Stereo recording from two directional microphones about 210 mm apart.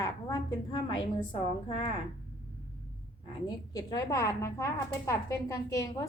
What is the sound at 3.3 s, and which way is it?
A woman's voice, 20° left (ahead or behind).